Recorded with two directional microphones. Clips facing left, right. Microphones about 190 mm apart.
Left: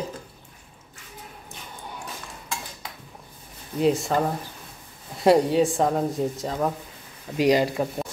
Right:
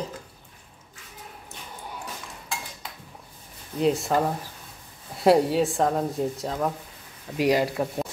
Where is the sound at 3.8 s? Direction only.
Centre (ahead or behind).